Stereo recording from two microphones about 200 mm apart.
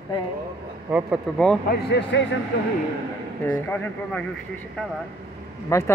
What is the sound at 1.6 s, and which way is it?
Speech, 55° left (ahead or behind).